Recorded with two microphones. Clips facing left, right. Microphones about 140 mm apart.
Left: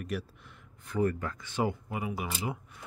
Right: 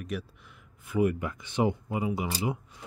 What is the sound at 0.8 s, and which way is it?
Speech, 10° right (ahead or behind).